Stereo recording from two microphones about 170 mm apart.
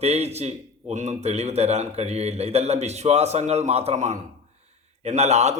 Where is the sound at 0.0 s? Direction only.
40° right (ahead or behind).